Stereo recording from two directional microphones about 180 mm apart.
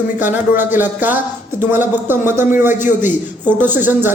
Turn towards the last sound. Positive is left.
turn(degrees=-10)  # may be behind; listen again after turning